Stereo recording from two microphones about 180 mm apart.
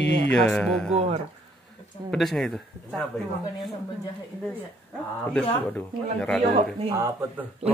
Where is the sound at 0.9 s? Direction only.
35° right (ahead or behind).